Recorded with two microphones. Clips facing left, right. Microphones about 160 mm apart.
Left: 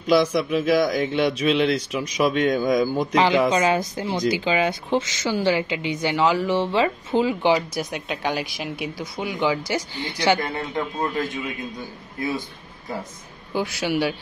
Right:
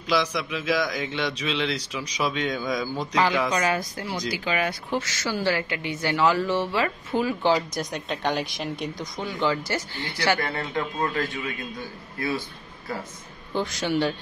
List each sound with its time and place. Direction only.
0.0 s speech: 50° left (ahead or behind)
3.2 s a woman's voice: 20° left (ahead or behind)
7.5 s a man's voice: 5° left (ahead or behind)